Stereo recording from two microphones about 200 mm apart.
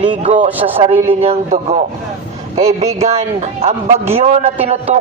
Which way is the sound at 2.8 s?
30° right (ahead or behind).